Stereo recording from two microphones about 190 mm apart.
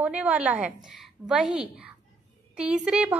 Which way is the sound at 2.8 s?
5° right (ahead or behind).